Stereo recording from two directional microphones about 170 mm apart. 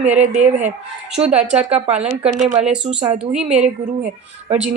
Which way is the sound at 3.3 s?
5° right (ahead or behind).